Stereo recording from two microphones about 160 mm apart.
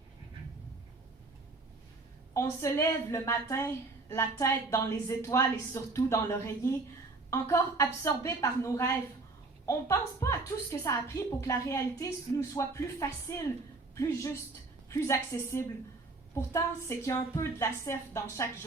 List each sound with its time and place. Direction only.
2.3 s a woman's voice: 20° left (ahead or behind)
10.2 s a woman's voice: 20° left (ahead or behind)